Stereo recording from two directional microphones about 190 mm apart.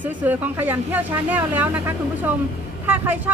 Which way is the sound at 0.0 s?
10° right (ahead or behind).